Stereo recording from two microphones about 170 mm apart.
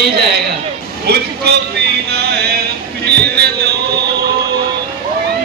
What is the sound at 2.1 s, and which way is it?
Music, 70° right (ahead or behind).